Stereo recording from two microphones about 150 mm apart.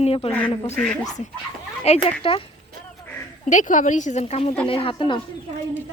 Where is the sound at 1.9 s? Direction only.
45° left (ahead or behind).